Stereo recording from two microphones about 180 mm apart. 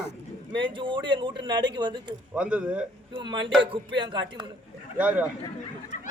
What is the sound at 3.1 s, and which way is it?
A man's voice, 25° right (ahead or behind).